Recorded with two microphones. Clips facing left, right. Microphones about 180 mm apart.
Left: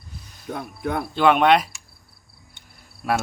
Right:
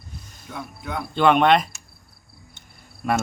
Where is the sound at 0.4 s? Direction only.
50° left (ahead or behind).